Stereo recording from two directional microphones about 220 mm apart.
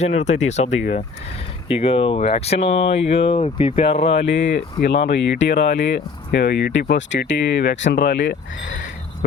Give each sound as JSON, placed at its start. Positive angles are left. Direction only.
{"t": 0.0, "sound": "speech", "side_deg": 30}
{"t": 4.3, "sound": "speech", "side_deg": 55}